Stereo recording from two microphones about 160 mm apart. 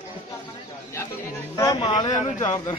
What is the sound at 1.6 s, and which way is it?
Speech, 25° left (ahead or behind).